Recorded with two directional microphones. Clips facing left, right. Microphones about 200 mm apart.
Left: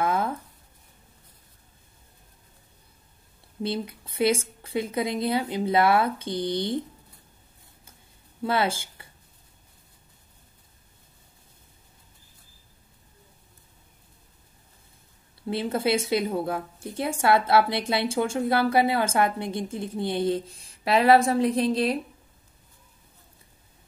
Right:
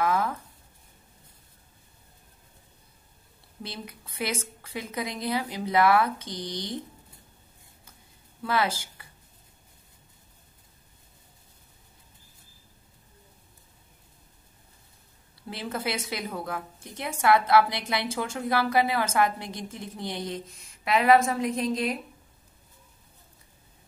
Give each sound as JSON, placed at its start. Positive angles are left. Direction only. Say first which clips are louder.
{"t": 0.0, "sound": "writing", "louder": "left 1 dB", "side_deg": 30}
{"t": 3.6, "sound": "a woman's voice", "louder": "left 10 dB", "side_deg": 30}
{"t": 8.4, "sound": "speech", "louder": "left 2 dB", "side_deg": 25}
{"t": 15.5, "sound": "a woman's voice", "louder": "left 7 dB", "side_deg": 30}